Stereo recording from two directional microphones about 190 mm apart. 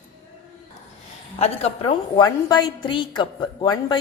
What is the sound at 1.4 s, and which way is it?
Speech, 35° left (ahead or behind).